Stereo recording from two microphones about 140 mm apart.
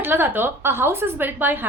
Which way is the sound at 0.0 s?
15° right (ahead or behind).